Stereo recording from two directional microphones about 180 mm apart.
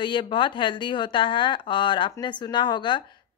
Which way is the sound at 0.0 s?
25° left (ahead or behind).